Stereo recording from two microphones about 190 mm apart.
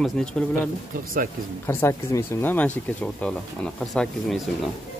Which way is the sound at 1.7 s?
15° left (ahead or behind).